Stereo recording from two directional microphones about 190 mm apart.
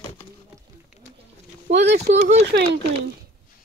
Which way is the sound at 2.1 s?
35° right (ahead or behind).